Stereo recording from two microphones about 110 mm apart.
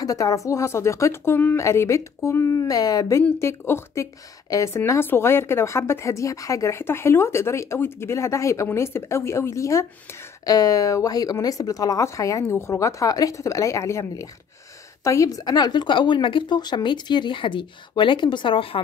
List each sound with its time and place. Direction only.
0.0 s a woman's voice: 30° left (ahead or behind); by 18.8 s 55° left (ahead or behind)